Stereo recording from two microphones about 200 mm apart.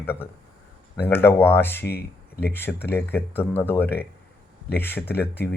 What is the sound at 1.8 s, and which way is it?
Speech, 50° left (ahead or behind).